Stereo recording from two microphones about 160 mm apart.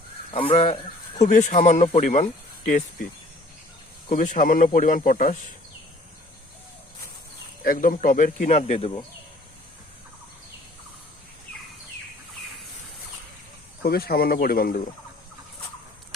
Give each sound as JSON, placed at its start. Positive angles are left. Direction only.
{"t": 0.3, "sound": "speech", "side_deg": 35}
{"t": 1.2, "sound": "speech", "side_deg": 50}
{"t": 4.1, "sound": "speech", "side_deg": 55}
{"t": 7.6, "sound": "speech", "side_deg": 60}
{"t": 13.8, "sound": "speech", "side_deg": 75}